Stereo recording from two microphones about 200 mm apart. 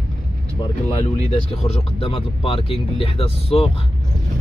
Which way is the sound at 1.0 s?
30° left (ahead or behind).